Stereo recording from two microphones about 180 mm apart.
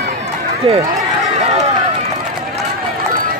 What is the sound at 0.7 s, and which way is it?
Speech, 30° right (ahead or behind).